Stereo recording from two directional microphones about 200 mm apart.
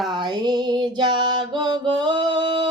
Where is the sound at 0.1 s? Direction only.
25° right (ahead or behind).